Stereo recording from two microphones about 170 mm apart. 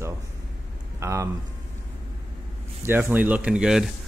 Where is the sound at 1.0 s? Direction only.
15° right (ahead or behind).